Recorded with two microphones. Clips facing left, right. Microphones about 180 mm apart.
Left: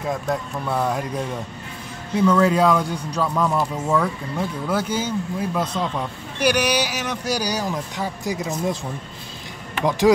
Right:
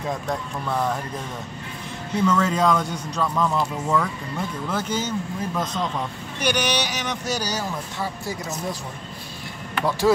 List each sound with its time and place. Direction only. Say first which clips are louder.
0.1 s speech: left 4 dB; 5° left (ahead or behind)
9.8 s speech: left 3 dB; 15° left (ahead or behind)